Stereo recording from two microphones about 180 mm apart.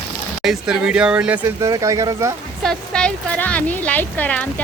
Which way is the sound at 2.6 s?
5° left (ahead or behind).